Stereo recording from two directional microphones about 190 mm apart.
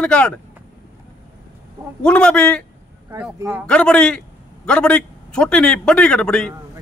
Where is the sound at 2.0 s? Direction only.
5° left (ahead or behind).